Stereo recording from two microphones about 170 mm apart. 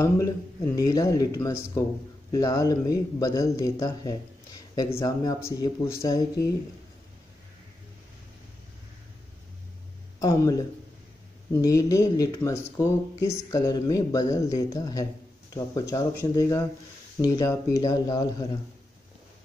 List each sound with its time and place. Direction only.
0.0 s speech: 20° left (ahead or behind)
10.2 s speech: 20° left (ahead or behind)